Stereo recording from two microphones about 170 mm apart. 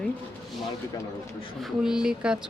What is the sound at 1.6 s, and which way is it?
Speech, 5° right (ahead or behind).